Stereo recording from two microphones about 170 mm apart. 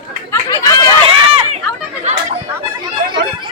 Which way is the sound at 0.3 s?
20° left (ahead or behind).